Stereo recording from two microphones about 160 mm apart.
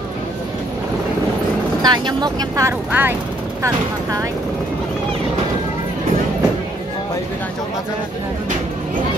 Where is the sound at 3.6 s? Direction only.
20° right (ahead or behind).